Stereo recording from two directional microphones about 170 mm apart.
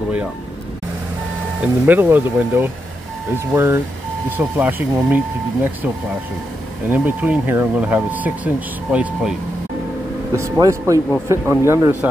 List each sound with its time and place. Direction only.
1.6 s speech: 10° right (ahead or behind)
6.9 s speech: 10° right (ahead or behind)
10.3 s speech: 15° right (ahead or behind)